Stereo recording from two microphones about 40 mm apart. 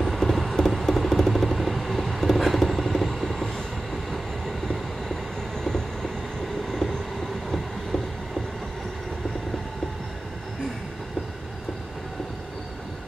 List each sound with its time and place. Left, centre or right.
0.0 s vehicle: centre
4.1 s train: centre